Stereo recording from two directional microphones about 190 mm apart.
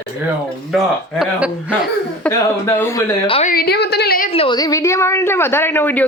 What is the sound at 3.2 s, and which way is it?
Speech, 30° left (ahead or behind).